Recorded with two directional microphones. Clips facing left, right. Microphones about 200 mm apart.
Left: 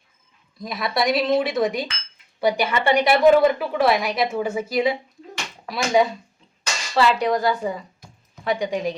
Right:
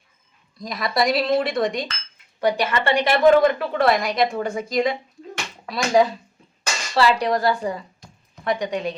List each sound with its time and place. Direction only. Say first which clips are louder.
0.6 s a woman's voice: right 1 dB; 5° left (ahead or behind)